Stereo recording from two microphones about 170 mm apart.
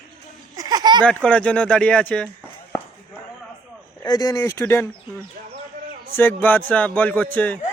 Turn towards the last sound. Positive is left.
turn(degrees=10)  # may be behind; listen again after turning